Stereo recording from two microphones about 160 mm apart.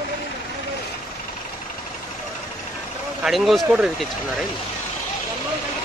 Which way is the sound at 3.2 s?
Centre (ahead or behind).